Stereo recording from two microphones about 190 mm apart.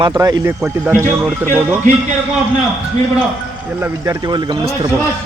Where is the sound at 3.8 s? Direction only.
15° right (ahead or behind).